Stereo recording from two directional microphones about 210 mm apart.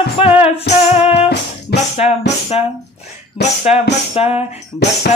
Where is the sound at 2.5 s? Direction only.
30° left (ahead or behind).